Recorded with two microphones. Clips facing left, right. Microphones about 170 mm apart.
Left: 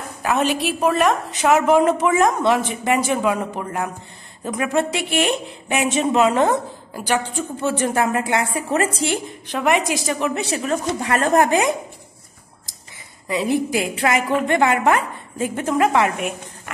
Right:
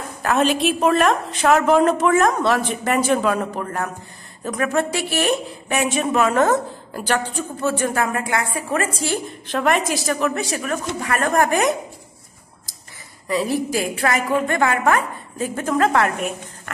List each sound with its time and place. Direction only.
0.2 s a woman's voice: 10° left (ahead or behind)
7.6 s a woman's voice: 25° left (ahead or behind)
13.3 s a woman's voice: 20° left (ahead or behind)